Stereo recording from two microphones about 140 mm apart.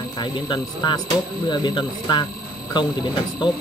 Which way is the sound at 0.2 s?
30° left (ahead or behind).